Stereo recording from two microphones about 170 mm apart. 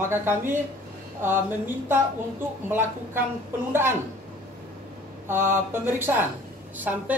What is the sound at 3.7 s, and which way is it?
Speech, 15° right (ahead or behind).